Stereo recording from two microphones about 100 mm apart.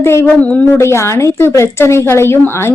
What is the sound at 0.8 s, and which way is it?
Speech, 30° left (ahead or behind).